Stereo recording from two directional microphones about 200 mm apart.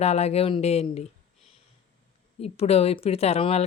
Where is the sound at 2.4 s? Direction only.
30° left (ahead or behind).